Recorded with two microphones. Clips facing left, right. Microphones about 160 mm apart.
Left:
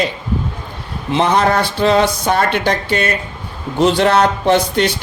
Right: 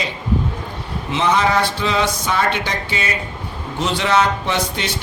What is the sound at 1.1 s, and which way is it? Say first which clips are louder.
Speech: left 3 dB; 55° left (ahead or behind).